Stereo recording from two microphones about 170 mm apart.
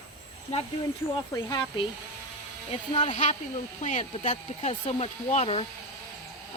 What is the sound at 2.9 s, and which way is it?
Speech, 35° left (ahead or behind).